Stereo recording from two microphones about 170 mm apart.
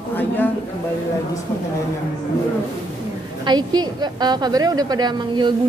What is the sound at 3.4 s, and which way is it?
A woman's voice, 25° right (ahead or behind).